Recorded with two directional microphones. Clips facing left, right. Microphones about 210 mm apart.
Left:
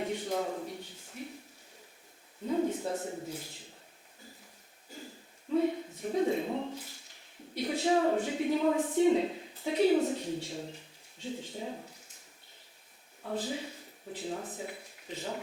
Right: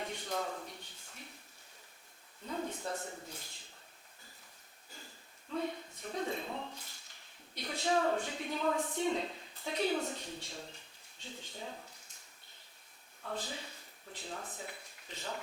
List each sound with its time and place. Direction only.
0.0 s a sound: 5° left (ahead or behind)
2.5 s speech: 5° left (ahead or behind)
2.9 s a man's voice: 20° left (ahead or behind)
3.2 s a man's voice: 5° left (ahead or behind)
5.5 s speech: 10° left (ahead or behind)
6.7 s a sound: 5° left (ahead or behind)
7.5 s a woman's voice: 5° left (ahead or behind)
13.2 s speech: 5° left (ahead or behind)